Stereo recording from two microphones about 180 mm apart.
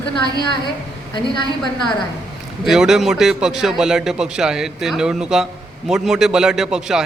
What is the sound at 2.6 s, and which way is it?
A man's voice, centre (ahead or behind).